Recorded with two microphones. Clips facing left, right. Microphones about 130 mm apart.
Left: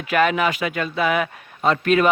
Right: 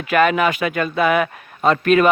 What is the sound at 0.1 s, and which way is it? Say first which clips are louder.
A man's voice: right 3 dB; 55° right (ahead or behind).